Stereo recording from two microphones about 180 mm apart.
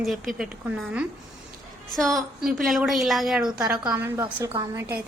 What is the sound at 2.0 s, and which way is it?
A woman's voice, centre (ahead or behind).